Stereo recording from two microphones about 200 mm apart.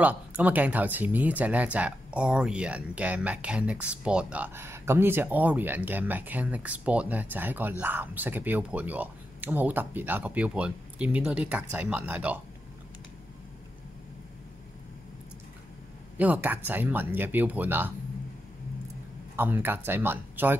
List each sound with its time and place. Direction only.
0.0 s speech: 10° right (ahead or behind)
16.2 s speech: 10° right (ahead or behind)
19.3 s speech: 10° right (ahead or behind)